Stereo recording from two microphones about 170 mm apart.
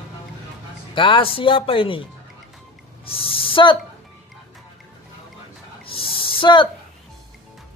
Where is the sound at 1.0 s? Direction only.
30° left (ahead or behind).